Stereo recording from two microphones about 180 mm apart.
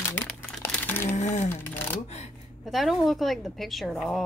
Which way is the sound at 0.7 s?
10° left (ahead or behind).